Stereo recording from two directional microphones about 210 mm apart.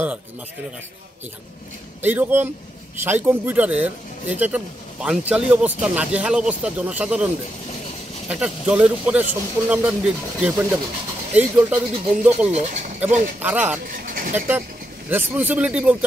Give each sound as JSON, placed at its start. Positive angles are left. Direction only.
{"t": 2.0, "sound": "speech", "side_deg": -10}
{"t": 8.3, "sound": "speech", "side_deg": -5}
{"t": 12.4, "sound": "speech", "side_deg": -30}
{"t": 13.4, "sound": "speech", "side_deg": -10}
{"t": 14.0, "sound": "a sound", "side_deg": -40}
{"t": 15.0, "sound": "speech", "side_deg": -10}